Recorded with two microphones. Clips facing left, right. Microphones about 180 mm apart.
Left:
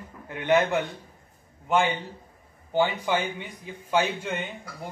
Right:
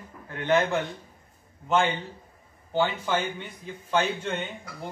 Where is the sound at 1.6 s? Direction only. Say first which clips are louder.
Even; 10° left (ahead or behind).